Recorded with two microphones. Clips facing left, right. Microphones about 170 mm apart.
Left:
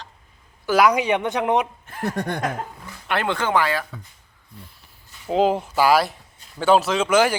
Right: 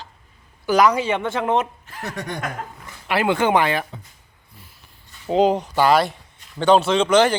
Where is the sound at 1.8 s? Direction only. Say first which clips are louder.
Left 5 dB; 50° left (ahead or behind).